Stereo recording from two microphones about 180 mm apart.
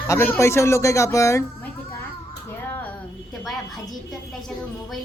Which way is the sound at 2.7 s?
10° left (ahead or behind).